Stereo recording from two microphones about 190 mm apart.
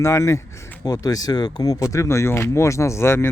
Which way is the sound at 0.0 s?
15° left (ahead or behind).